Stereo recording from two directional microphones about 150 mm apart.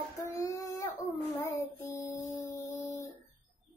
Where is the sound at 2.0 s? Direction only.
20° left (ahead or behind).